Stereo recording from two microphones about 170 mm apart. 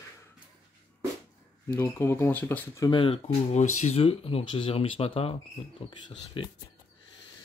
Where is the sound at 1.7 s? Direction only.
15° left (ahead or behind).